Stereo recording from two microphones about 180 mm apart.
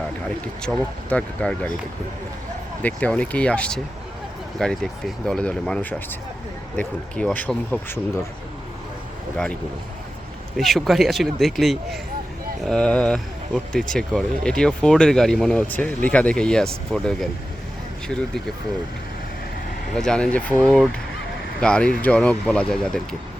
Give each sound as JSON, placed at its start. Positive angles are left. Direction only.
{"t": 0.4, "sound": "speech", "side_deg": 5}
{"t": 2.8, "sound": "speech", "side_deg": 10}
{"t": 10.6, "sound": "speech", "side_deg": 0}
{"t": 19.9, "sound": "speech", "side_deg": 5}